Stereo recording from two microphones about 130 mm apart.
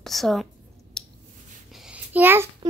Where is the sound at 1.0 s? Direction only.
5° left (ahead or behind).